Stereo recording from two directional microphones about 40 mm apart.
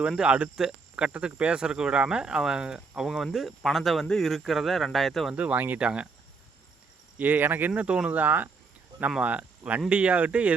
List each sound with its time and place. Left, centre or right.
0.2 s speech: right
0.5 s speech: centre
3.3 s speech: centre
5.3 s speech: right
5.5 s speech: right
5.8 s speech: right
7.2 s speech: right
7.8 s speech: right
8.1 s speech: right